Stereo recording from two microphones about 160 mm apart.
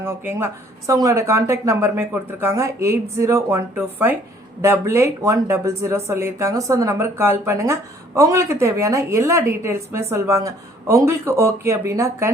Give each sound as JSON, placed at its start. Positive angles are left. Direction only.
{"t": 0.0, "sound": "speech", "side_deg": -15}